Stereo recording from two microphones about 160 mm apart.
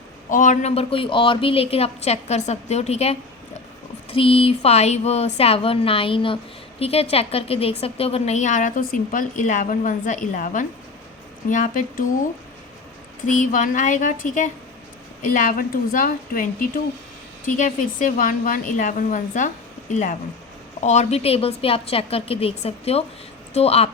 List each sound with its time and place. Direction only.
0.3 s a woman's voice: 55° left (ahead or behind)
13.4 s a woman's voice: 55° left (ahead or behind)